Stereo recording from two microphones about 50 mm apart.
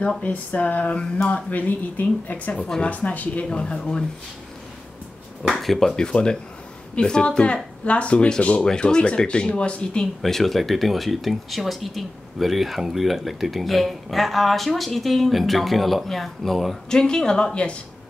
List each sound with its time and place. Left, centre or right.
0.2 s speech: left
3.4 s speech: centre
5.5 s speech: centre; by 10.0 s left
10.2 s speech: centre
16.9 s speech: centre